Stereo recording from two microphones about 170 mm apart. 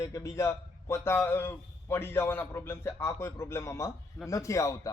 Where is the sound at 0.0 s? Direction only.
15° left (ahead or behind).